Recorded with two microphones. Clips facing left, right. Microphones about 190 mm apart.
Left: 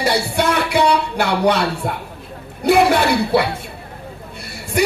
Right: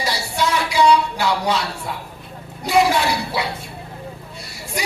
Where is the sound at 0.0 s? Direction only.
60° left (ahead or behind).